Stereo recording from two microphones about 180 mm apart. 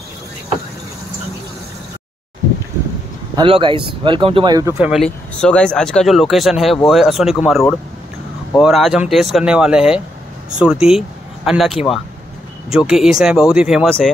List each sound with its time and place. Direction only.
3.3 s speech: 30° right (ahead or behind)
4.7 s speech: centre (ahead or behind)
12.7 s speech: centre (ahead or behind)